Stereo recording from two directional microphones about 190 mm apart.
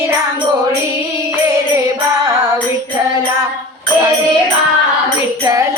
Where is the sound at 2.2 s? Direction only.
20° right (ahead or behind).